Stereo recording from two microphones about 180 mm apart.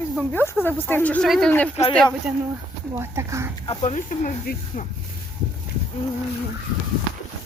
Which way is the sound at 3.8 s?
45° left (ahead or behind).